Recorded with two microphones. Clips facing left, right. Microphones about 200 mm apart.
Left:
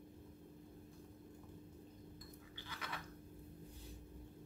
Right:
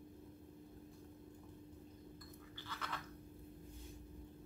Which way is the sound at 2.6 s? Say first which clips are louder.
Right 1 dB; 10° left (ahead or behind).